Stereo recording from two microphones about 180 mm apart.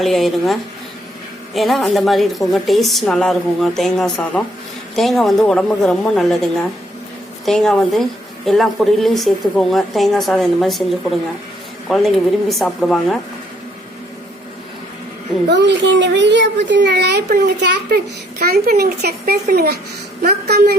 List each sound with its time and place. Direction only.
0.0 s speech: centre (ahead or behind)
15.4 s a woman's voice: 70° right (ahead or behind)